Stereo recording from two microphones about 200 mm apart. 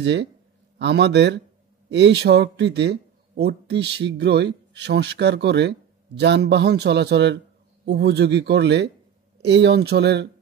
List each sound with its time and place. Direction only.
0.0 s speech: 60° right (ahead or behind)